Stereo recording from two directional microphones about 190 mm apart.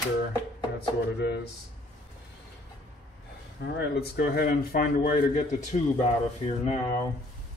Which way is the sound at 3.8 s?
55° left (ahead or behind).